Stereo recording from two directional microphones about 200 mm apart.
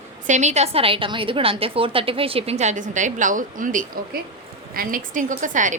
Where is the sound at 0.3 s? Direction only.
35° right (ahead or behind).